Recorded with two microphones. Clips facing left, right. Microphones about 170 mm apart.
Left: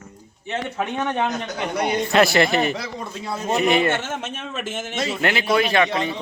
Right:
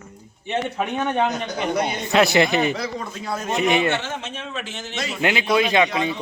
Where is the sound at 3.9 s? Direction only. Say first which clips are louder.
Left 1 dB; 50° left (ahead or behind).